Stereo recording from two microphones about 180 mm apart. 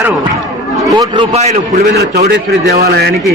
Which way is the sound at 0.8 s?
20° right (ahead or behind).